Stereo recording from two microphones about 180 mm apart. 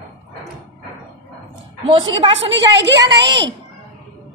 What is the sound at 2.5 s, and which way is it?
Speech, 75° right (ahead or behind).